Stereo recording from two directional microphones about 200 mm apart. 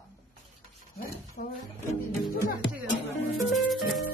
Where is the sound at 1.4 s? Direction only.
55° left (ahead or behind).